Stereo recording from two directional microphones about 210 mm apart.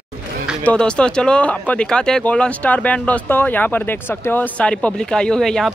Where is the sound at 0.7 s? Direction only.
5° left (ahead or behind).